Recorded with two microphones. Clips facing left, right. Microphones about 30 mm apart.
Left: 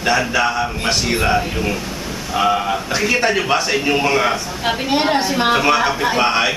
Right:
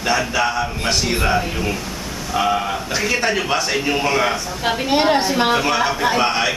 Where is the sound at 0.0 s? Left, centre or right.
Centre.